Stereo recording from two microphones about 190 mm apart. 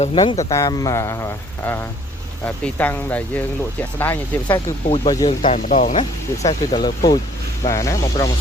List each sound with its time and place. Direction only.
0.0 s speech: 25° left (ahead or behind); by 4.2 s 10° left (ahead or behind)
4.9 s speech: 25° left (ahead or behind)
5.4 s speech: 40° left (ahead or behind)
6.5 s speech: 25° left (ahead or behind)